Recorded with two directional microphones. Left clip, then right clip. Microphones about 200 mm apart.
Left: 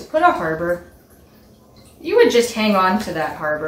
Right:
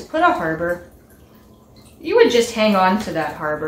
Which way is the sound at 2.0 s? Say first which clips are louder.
Even; 20° right (ahead or behind).